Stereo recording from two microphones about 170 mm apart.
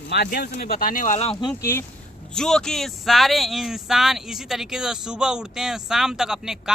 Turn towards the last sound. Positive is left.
turn(degrees=-5)  # may be behind; listen again after turning